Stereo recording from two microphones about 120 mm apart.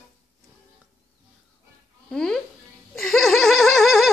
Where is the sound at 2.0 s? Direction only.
5° left (ahead or behind).